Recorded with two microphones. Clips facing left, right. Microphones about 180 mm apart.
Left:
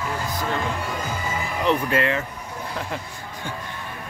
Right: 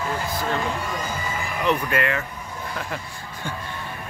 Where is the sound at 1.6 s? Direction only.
25° left (ahead or behind).